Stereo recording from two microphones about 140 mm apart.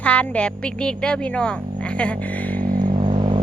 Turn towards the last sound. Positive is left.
turn(degrees=-40)  # may be behind; listen again after turning